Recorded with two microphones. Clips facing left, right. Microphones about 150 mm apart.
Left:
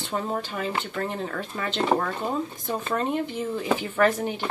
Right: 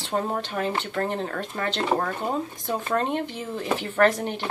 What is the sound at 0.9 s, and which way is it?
Speech, 40° right (ahead or behind).